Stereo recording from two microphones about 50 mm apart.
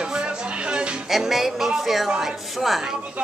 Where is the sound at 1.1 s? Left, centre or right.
Centre.